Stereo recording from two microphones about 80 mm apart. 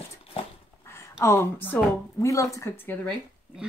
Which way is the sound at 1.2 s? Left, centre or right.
Left.